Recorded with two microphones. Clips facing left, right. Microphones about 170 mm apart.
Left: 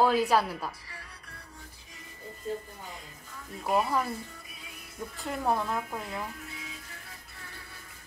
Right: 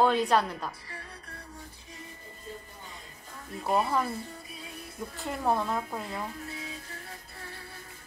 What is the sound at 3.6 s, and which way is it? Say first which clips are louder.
Speech: even; 25° right (ahead or behind).